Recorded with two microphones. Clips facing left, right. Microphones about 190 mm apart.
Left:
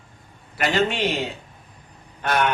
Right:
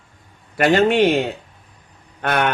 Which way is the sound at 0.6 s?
55° right (ahead or behind).